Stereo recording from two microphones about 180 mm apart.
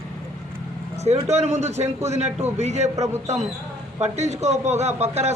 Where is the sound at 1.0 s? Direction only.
40° right (ahead or behind).